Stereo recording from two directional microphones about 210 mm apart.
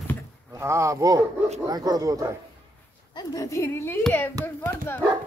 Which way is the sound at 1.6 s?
20° right (ahead or behind).